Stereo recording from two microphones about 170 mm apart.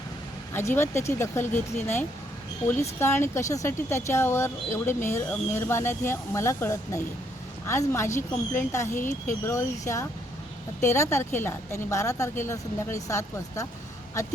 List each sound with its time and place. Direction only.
0.5 s speech: 15° left (ahead or behind)
3.0 s speech: 15° left (ahead or behind)